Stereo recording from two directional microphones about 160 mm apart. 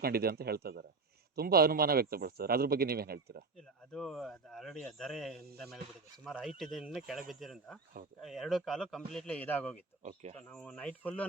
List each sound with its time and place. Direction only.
0.0 s speech: 75° right (ahead or behind)
3.9 s speech: centre (ahead or behind)
10.0 s speech: 40° right (ahead or behind)
10.3 s speech: 5° left (ahead or behind)